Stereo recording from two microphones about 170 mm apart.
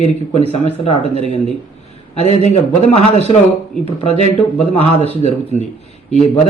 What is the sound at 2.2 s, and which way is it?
Speech, 40° left (ahead or behind).